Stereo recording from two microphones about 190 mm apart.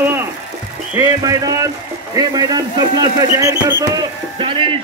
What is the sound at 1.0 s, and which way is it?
A man's voice, 20° right (ahead or behind).